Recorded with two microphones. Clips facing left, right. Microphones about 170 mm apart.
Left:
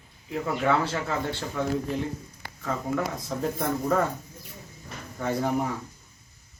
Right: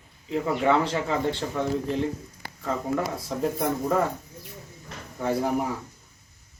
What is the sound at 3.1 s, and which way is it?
Speech, 5° right (ahead or behind).